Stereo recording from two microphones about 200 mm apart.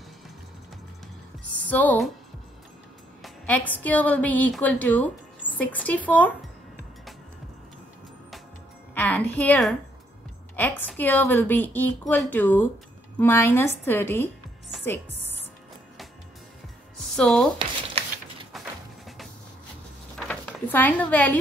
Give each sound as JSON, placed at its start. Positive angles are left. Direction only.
{"t": 1.7, "sound": "a woman's voice", "side_deg": 10}
{"t": 3.2, "sound": "a woman's voice", "side_deg": 10}
{"t": 8.9, "sound": "a woman's voice", "side_deg": 10}
{"t": 17.0, "sound": "music", "side_deg": 0}
{"t": 17.6, "sound": "a sound", "side_deg": -25}
{"t": 20.2, "sound": "a sound", "side_deg": 5}